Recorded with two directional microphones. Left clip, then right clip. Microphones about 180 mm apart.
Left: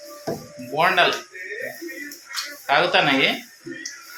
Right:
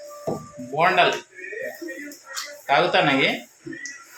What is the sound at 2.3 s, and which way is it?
Speech, 5° left (ahead or behind).